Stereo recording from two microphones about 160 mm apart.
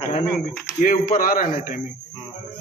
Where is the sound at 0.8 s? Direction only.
60° left (ahead or behind).